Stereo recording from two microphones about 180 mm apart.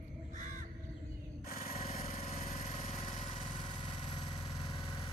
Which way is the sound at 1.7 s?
35° left (ahead or behind).